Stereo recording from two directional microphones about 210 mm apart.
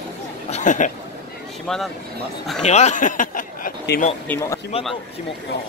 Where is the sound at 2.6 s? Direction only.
30° left (ahead or behind).